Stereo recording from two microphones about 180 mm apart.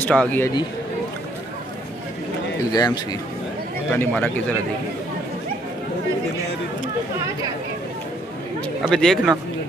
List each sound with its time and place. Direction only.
0.0 s speech: 10° left (ahead or behind)
2.7 s a man's voice: 20° left (ahead or behind)
8.8 s speech: centre (ahead or behind)